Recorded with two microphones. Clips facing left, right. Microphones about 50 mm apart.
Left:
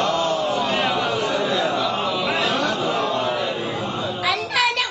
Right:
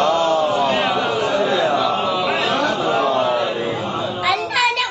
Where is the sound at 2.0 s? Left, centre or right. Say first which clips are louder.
Right 3 dB; centre.